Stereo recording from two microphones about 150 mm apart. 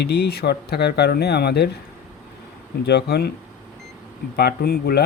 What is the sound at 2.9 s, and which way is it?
Speech, 90° left.